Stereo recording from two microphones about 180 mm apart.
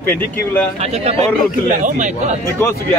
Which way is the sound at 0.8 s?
35° right (ahead or behind).